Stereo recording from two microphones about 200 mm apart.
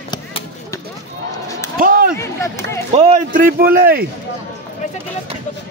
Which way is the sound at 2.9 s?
35° right (ahead or behind).